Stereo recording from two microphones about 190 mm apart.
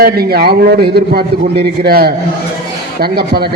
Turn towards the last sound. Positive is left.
turn(degrees=-55)  # may be behind; listen again after turning